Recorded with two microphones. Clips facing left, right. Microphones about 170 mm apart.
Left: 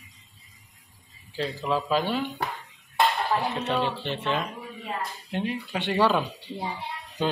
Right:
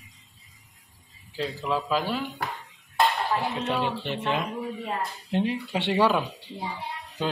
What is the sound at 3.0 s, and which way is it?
Music, centre (ahead or behind).